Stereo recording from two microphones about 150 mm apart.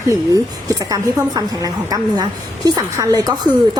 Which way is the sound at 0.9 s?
25° right (ahead or behind).